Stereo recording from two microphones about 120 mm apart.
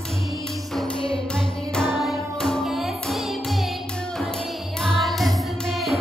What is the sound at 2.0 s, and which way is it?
Music, centre (ahead or behind).